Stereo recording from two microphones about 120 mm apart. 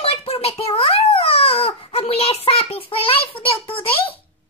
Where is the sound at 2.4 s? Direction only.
50° left (ahead or behind).